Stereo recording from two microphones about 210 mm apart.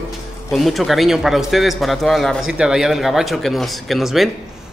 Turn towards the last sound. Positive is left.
turn(degrees=0)  # may be behind; listen again after turning